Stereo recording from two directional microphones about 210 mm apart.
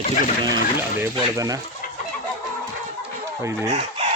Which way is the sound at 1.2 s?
15° right (ahead or behind).